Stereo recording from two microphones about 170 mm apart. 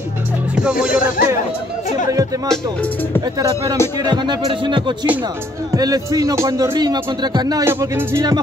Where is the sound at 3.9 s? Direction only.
25° right (ahead or behind).